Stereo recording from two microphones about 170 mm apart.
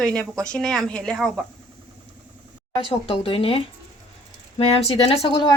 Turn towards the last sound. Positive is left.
turn(degrees=30)  # may be behind; listen again after turning